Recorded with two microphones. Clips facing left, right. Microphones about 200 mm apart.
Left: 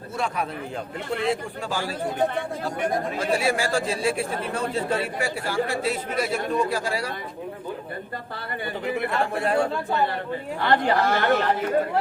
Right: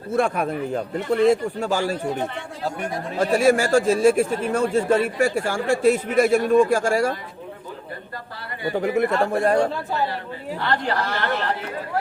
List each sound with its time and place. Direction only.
0.1 s a man's voice: 50° right (ahead or behind)
3.2 s a man's voice: 45° right (ahead or behind)
8.8 s a man's voice: 45° right (ahead or behind)
11.0 s speech: 50° left (ahead or behind)